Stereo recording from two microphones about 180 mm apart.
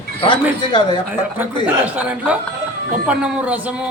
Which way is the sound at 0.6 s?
25° left (ahead or behind).